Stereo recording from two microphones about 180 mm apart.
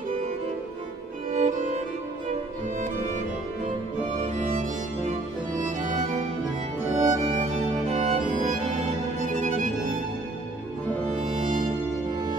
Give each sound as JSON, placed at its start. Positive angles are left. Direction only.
{"t": 1.3, "sound": "music", "side_deg": -40}
{"t": 4.2, "sound": "music", "side_deg": -35}
{"t": 6.9, "sound": "music", "side_deg": -40}
{"t": 9.2, "sound": "music", "side_deg": -45}